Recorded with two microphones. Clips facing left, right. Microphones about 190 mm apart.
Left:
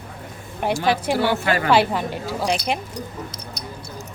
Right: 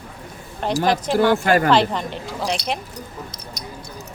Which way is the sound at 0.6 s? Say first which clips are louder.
Even; 10° left (ahead or behind).